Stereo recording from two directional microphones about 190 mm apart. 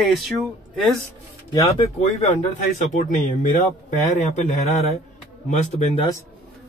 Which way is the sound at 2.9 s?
45° left (ahead or behind).